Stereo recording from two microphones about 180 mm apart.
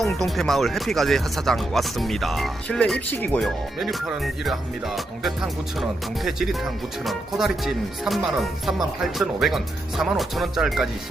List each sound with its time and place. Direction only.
0.2 s speech: centre (ahead or behind)